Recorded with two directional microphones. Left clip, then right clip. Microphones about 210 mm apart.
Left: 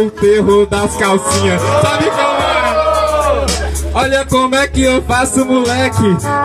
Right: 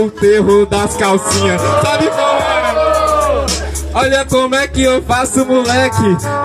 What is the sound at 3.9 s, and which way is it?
Music, 35° right (ahead or behind).